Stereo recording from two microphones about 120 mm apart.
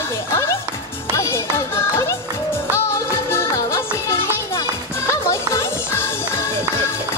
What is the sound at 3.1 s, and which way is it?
Music, 20° left (ahead or behind).